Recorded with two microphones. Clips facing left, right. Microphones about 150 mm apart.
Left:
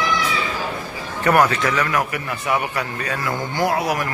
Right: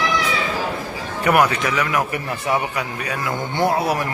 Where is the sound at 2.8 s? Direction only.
15° right (ahead or behind).